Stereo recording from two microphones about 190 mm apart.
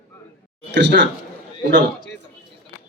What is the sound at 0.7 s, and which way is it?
Speech, 70° right (ahead or behind).